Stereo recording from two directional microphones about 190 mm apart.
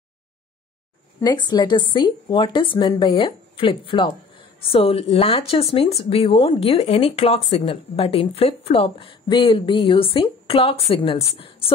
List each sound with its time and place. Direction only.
1.2 s speech: 20° left (ahead or behind)